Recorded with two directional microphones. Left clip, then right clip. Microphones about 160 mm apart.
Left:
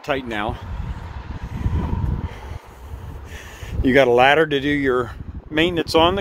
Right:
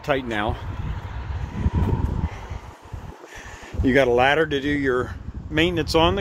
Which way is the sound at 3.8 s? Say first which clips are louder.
Left 4 dB; 40° left (ahead or behind).